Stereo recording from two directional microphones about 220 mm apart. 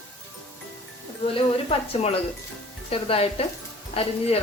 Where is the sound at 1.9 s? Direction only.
30° left (ahead or behind).